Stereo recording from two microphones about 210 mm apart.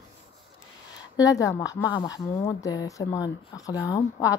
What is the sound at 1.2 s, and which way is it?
Speech, 15° left (ahead or behind).